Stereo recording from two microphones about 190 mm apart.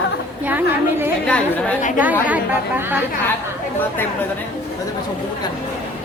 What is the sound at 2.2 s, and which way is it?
Speech, 10° right (ahead or behind).